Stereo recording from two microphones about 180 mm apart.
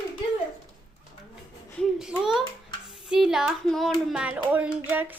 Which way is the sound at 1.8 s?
5° right (ahead or behind).